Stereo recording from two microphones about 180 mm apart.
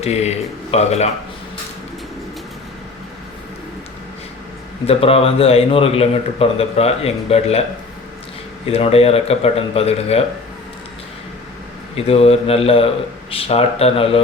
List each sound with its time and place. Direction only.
0.0 s a man's voice: 35° left (ahead or behind)
4.9 s a man's voice: 35° left (ahead or behind)
8.6 s a man's voice: 30° left (ahead or behind)
11.9 s a man's voice: 35° left (ahead or behind)